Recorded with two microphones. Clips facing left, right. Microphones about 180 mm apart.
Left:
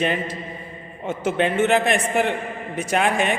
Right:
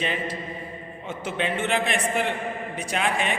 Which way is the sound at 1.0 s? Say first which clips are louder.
Left 7 dB; 45° left (ahead or behind).